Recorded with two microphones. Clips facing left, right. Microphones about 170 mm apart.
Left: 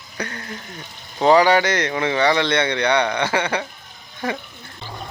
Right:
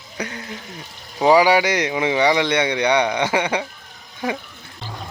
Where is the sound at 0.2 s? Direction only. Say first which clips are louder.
Right 1 dB; 10° right (ahead or behind).